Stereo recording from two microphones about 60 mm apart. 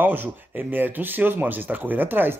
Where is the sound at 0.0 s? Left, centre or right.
Right.